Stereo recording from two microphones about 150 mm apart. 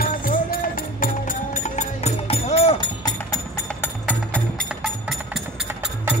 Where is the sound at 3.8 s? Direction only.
10° left (ahead or behind).